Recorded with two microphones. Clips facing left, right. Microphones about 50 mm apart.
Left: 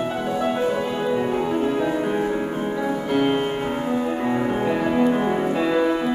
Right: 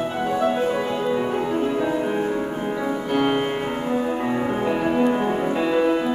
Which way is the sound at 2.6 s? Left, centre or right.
Centre.